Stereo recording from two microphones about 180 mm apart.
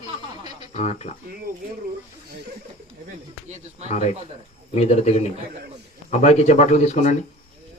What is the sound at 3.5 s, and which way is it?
Speech, 40° right (ahead or behind).